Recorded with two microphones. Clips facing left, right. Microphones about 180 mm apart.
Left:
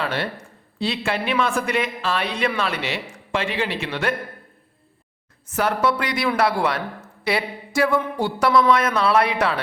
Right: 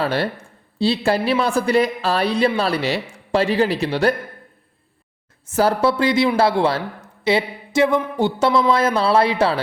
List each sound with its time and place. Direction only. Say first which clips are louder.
0.0 s a woman's voice: right 5 dB; 35° right (ahead or behind)
5.5 s speech: right 4 dB; 30° right (ahead or behind)